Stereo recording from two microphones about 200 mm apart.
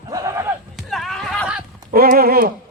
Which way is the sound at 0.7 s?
Centre (ahead or behind).